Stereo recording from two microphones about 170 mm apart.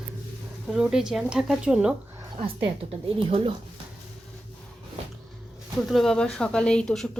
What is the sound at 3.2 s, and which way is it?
Speech, 35° right (ahead or behind).